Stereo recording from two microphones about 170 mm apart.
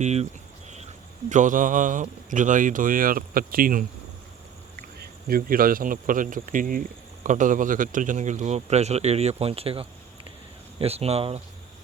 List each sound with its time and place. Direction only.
0.0 s speech: 40° right (ahead or behind)
1.3 s speech: 50° right (ahead or behind)